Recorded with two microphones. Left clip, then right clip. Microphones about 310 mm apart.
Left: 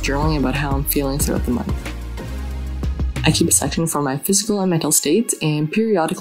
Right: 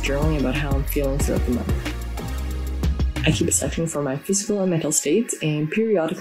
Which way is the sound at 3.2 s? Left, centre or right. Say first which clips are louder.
Left 4 dB; left.